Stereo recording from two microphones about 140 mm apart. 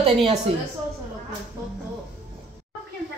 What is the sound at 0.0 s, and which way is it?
Speech, 45° right (ahead or behind).